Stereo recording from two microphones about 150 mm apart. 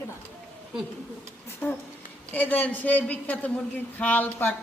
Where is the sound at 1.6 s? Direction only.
10° left (ahead or behind).